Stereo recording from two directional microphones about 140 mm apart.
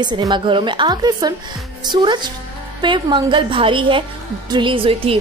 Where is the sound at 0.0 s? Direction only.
35° right (ahead or behind).